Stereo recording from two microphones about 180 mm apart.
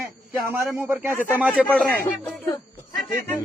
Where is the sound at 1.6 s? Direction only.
5° left (ahead or behind).